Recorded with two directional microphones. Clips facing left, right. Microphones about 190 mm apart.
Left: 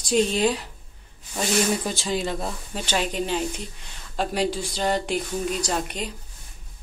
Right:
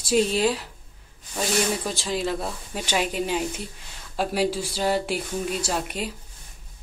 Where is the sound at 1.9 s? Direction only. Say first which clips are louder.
Even; centre (ahead or behind).